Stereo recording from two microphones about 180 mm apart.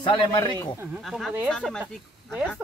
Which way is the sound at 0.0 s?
25° left (ahead or behind).